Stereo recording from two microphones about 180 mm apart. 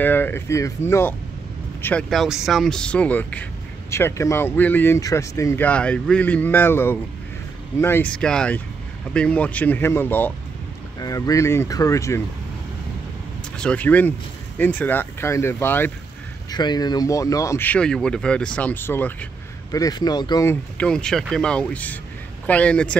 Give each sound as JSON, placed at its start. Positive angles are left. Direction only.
{"t": 0.0, "sound": "speech", "side_deg": 10}
{"t": 2.0, "sound": "speech", "side_deg": 0}
{"t": 13.6, "sound": "speech", "side_deg": 5}
{"t": 16.4, "sound": "speech", "side_deg": 20}
{"t": 20.7, "sound": "speech", "side_deg": 5}